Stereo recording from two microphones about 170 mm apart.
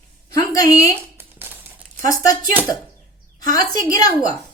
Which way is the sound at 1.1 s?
10° right (ahead or behind).